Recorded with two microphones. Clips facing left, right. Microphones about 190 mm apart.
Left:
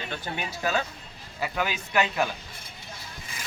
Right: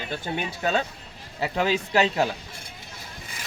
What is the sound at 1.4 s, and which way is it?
Speech, 30° right (ahead or behind).